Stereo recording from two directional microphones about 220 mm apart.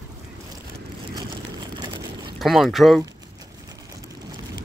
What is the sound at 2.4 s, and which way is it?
Speech, centre (ahead or behind).